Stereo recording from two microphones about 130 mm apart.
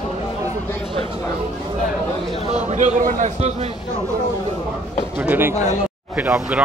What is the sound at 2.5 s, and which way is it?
A man's voice, 70° right (ahead or behind).